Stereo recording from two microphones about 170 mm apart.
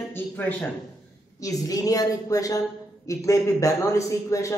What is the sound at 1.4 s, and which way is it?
A man's voice, 20° left (ahead or behind).